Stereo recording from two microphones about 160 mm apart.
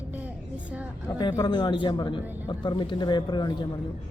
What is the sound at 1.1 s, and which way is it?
Speech, 25° left (ahead or behind).